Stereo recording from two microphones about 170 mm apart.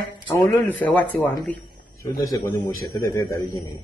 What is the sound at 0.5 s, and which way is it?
Speech, 10° left (ahead or behind).